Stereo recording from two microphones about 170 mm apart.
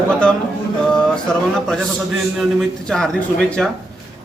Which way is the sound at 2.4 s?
Centre (ahead or behind).